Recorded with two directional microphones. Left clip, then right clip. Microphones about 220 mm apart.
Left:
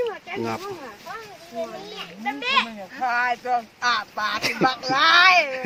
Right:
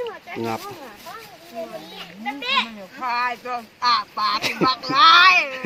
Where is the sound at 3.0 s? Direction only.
5° left (ahead or behind).